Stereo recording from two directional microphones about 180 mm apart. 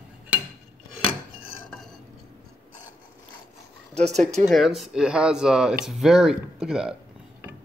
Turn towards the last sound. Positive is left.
turn(degrees=-5)  # may be behind; listen again after turning